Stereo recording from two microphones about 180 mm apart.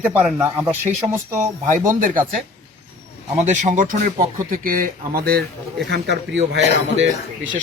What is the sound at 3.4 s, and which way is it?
Speech, 45° right (ahead or behind).